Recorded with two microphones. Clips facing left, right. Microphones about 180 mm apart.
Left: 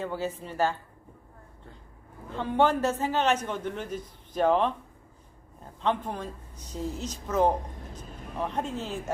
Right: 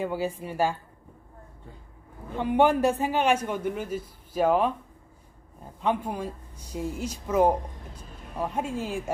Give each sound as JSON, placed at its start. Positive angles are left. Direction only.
{"t": 0.0, "sound": "a man's voice", "side_deg": -10}
{"t": 2.3, "sound": "a man's voice", "side_deg": -15}
{"t": 5.8, "sound": "a man's voice", "side_deg": -10}